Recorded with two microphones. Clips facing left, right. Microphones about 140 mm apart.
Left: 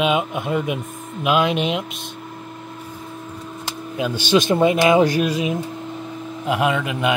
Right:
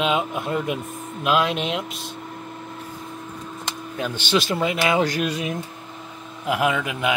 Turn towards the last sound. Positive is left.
turn(degrees=0)  # may be behind; listen again after turning